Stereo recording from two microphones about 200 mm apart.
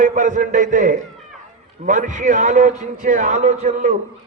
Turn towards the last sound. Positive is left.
turn(degrees=-35)  # may be behind; listen again after turning